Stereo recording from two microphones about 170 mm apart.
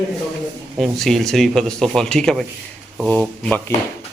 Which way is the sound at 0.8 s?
Centre (ahead or behind).